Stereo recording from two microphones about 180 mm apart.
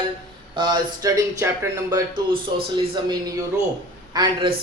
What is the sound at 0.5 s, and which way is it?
Speech, 25° right (ahead or behind).